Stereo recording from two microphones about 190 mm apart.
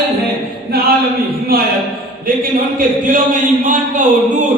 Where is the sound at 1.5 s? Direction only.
50° right (ahead or behind).